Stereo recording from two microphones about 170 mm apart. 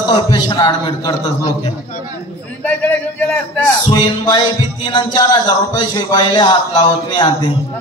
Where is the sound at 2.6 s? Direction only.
10° left (ahead or behind).